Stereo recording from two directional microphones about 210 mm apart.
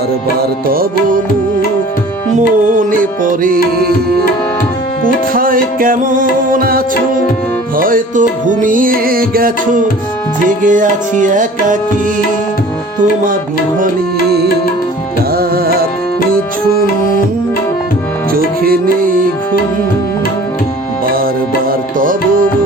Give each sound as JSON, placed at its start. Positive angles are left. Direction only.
{"t": 2.7, "sound": "music", "side_deg": -40}
{"t": 5.0, "sound": "music", "side_deg": -40}
{"t": 15.4, "sound": "music", "side_deg": -45}
{"t": 18.3, "sound": "music", "side_deg": -45}
{"t": 21.7, "sound": "music", "side_deg": -40}